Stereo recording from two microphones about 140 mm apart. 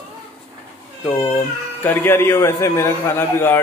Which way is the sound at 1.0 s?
15° left (ahead or behind).